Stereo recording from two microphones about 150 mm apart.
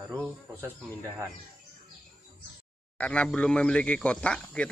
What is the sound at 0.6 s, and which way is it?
Speech, 15° right (ahead or behind).